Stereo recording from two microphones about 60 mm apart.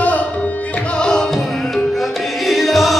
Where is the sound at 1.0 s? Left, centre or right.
Centre.